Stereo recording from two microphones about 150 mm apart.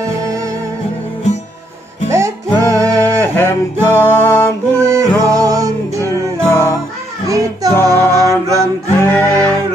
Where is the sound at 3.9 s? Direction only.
15° left (ahead or behind).